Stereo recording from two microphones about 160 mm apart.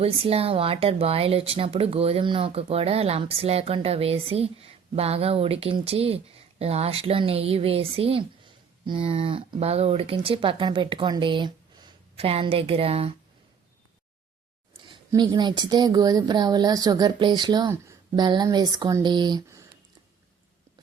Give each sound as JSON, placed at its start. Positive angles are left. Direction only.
{"t": 0.0, "sound": "speech", "side_deg": -40}
{"t": 14.8, "sound": "speech", "side_deg": -30}